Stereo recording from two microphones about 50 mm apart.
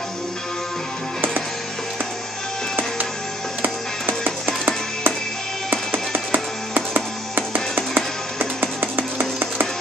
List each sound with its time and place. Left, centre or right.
3.6 s music: right